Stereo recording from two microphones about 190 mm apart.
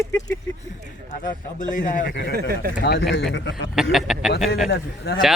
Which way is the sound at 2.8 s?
70° left (ahead or behind).